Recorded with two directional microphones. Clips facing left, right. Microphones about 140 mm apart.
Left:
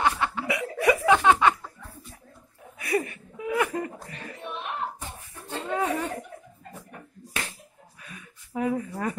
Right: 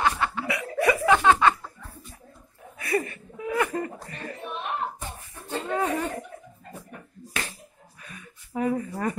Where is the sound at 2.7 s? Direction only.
15° left (ahead or behind).